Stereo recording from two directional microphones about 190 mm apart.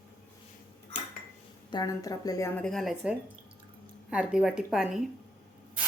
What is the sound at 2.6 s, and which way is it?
Speech, centre (ahead or behind).